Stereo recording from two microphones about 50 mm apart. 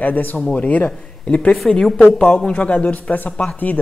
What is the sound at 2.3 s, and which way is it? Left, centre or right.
Speech, left.